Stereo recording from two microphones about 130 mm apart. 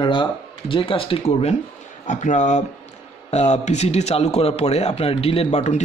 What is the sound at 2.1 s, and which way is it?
A man's voice, 75° left (ahead or behind).